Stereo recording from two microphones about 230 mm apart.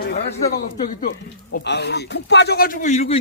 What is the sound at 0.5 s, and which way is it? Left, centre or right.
A man's voice, left.